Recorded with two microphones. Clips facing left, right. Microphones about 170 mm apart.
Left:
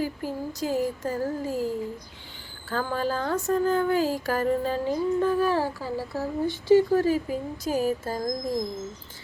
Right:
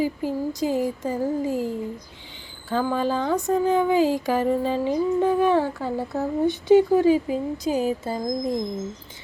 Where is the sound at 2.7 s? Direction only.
20° right (ahead or behind).